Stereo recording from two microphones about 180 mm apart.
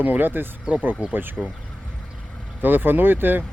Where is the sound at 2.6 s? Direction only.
10° right (ahead or behind).